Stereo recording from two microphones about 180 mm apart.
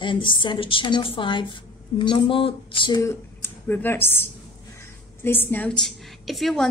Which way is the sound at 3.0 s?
15° left (ahead or behind).